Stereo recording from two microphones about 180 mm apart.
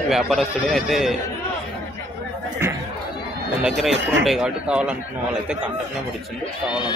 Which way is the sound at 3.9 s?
90° right.